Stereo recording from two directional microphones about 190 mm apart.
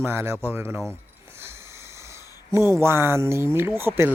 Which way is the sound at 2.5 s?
15° right (ahead or behind).